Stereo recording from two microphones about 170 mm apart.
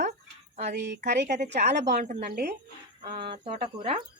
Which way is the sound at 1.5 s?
80° right.